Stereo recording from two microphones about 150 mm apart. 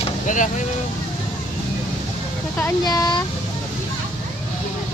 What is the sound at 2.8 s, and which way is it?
Speech, 25° left (ahead or behind).